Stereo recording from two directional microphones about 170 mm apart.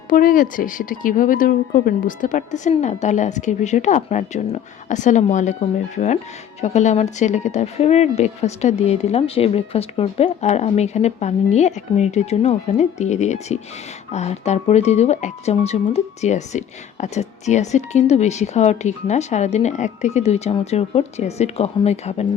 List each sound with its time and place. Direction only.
0.1 s a woman's voice: 55° left (ahead or behind); by 22.3 s 40° left (ahead or behind)